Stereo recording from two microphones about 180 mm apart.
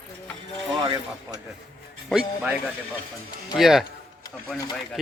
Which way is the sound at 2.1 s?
5° right (ahead or behind).